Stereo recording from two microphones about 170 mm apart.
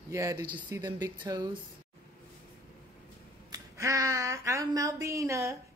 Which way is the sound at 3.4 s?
20° right (ahead or behind).